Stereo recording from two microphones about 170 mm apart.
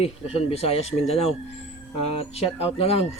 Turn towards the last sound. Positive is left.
turn(degrees=35)  # may be behind; listen again after turning